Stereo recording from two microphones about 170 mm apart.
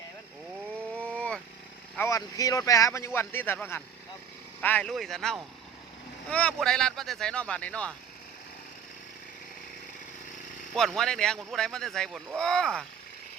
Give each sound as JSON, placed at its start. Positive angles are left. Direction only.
{"t": 0.9, "sound": "vehicle", "side_deg": 10}
{"t": 2.0, "sound": "speech", "side_deg": 20}
{"t": 10.8, "sound": "speech", "side_deg": 0}